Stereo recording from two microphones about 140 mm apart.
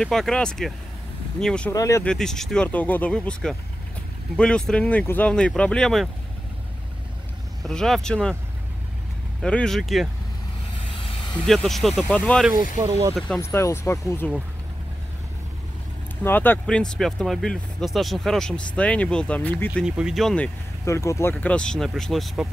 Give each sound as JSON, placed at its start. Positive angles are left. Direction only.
{"t": 0.0, "sound": "speech", "side_deg": 5}
{"t": 1.7, "sound": "speech", "side_deg": 25}
{"t": 2.0, "sound": "speech", "side_deg": 5}
{"t": 7.6, "sound": "speech", "side_deg": 0}
{"t": 9.4, "sound": "speech", "side_deg": 5}
{"t": 11.0, "sound": "vehicle", "side_deg": 40}
{"t": 11.3, "sound": "speech", "side_deg": 5}
{"t": 12.7, "sound": "speech", "side_deg": -25}
{"t": 13.4, "sound": "speech", "side_deg": 20}
{"t": 16.3, "sound": "speech", "side_deg": 15}
{"t": 19.8, "sound": "speech", "side_deg": -5}
{"t": 20.8, "sound": "speech", "side_deg": 20}